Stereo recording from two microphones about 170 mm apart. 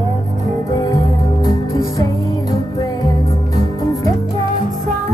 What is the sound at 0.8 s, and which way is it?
Music, 20° left (ahead or behind).